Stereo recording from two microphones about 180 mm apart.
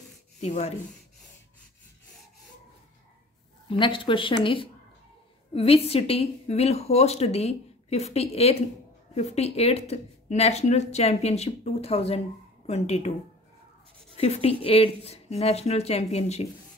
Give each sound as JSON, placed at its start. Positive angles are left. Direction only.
{"t": 0.4, "sound": "a woman's voice", "side_deg": 40}
{"t": 3.6, "sound": "a woman's voice", "side_deg": 30}
{"t": 14.1, "sound": "a woman's voice", "side_deg": 35}